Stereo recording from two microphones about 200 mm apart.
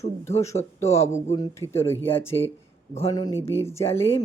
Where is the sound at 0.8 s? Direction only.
15° left (ahead or behind).